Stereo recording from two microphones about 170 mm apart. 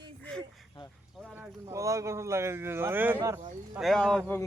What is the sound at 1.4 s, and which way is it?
Speech, 20° right (ahead or behind).